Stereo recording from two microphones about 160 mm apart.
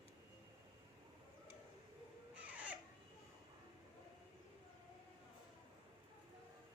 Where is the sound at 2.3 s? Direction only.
10° right (ahead or behind).